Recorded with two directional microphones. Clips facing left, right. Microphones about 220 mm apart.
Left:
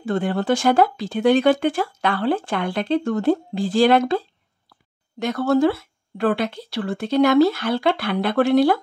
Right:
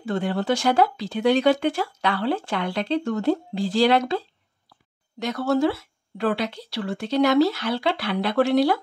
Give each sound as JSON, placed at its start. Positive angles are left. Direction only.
{"t": 0.0, "sound": "speech", "side_deg": 50}
{"t": 5.2, "sound": "speech", "side_deg": 55}